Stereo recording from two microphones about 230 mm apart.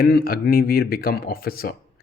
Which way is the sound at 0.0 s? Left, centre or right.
Left.